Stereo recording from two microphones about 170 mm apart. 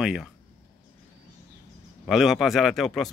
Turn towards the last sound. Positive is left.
turn(degrees=0)  # may be behind; listen again after turning